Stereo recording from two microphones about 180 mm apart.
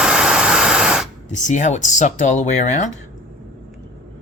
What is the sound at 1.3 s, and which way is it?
Speech, 45° left (ahead or behind).